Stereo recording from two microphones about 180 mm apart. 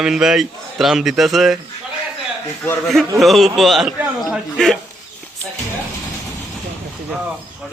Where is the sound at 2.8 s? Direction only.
Centre (ahead or behind).